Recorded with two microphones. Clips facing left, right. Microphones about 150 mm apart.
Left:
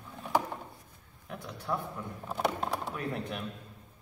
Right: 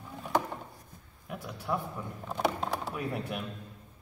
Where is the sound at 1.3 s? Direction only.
10° right (ahead or behind).